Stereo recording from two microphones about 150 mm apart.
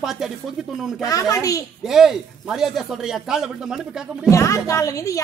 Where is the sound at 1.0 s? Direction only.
20° left (ahead or behind).